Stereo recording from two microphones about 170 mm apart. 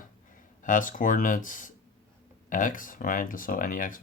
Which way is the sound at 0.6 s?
50° left (ahead or behind).